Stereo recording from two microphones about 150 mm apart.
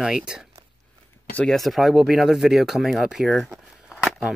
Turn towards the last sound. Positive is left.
turn(degrees=5)  # may be behind; listen again after turning